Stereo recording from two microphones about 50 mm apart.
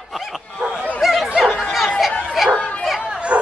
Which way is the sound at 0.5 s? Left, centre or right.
Centre.